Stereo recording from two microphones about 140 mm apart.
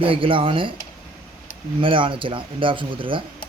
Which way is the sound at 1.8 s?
40° right (ahead or behind).